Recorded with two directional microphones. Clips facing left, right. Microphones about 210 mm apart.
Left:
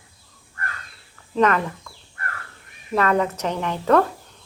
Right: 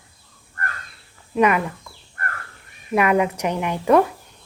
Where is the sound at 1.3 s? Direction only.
10° right (ahead or behind).